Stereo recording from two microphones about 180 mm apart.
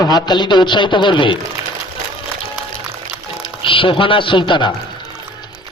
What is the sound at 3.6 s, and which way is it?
Music, 30° left (ahead or behind).